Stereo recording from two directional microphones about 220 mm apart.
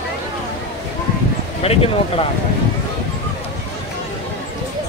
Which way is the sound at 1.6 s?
25° left (ahead or behind).